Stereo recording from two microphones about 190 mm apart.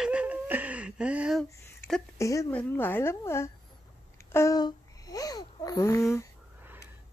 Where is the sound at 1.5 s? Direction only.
15° left (ahead or behind).